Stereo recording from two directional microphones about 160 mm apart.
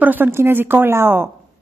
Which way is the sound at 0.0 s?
10° right (ahead or behind).